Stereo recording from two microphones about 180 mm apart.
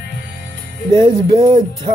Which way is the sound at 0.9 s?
30° right (ahead or behind).